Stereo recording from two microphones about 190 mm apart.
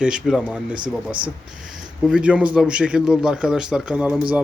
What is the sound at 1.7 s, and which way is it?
A man's voice, 5° right (ahead or behind).